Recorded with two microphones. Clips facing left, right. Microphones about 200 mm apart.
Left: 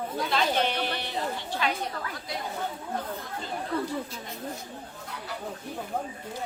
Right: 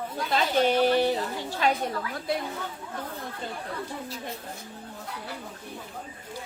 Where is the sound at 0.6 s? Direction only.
45° right (ahead or behind).